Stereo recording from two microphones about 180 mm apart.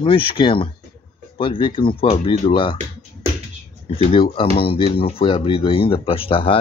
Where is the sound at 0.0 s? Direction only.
30° left (ahead or behind).